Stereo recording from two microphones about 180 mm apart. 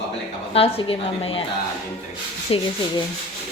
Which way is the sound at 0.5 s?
30° left (ahead or behind).